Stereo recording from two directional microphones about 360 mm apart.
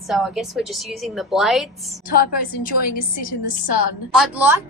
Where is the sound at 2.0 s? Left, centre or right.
Left.